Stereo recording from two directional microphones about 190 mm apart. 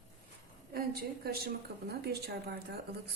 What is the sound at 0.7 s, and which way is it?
A woman's voice, 50° right (ahead or behind).